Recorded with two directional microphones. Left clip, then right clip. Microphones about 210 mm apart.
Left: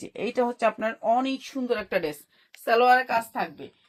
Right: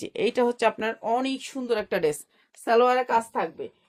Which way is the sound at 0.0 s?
50° right (ahead or behind).